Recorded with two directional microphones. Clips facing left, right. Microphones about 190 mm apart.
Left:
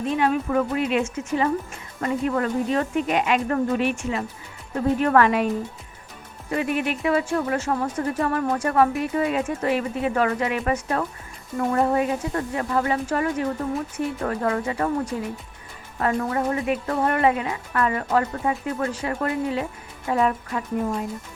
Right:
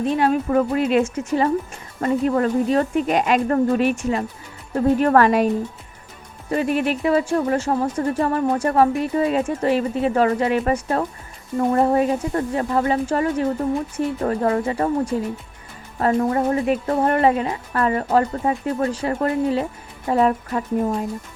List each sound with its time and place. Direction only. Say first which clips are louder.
0.2 s speech: right 2 dB; 35° right (ahead or behind)
6.5 s speech: right 4 dB; 35° right (ahead or behind)
16.0 s speech: right 5 dB; 35° right (ahead or behind)